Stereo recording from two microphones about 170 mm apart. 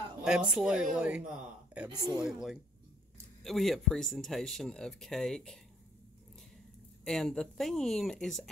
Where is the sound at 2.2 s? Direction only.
Centre (ahead or behind).